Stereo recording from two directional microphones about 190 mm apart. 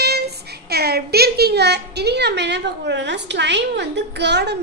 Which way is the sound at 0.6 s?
55° right (ahead or behind).